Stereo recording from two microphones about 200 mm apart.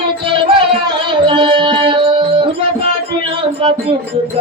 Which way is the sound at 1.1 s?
25° right (ahead or behind).